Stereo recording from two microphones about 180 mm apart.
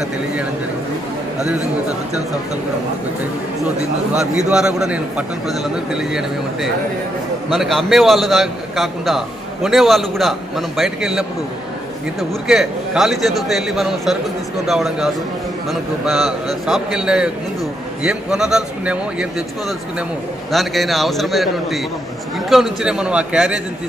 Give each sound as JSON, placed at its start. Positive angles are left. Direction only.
{"t": 4.1, "sound": "a man's voice", "side_deg": -5}
{"t": 7.5, "sound": "a man's voice", "side_deg": 0}
{"t": 20.5, "sound": "a man's voice", "side_deg": 0}
{"t": 22.5, "sound": "a man's voice", "side_deg": 0}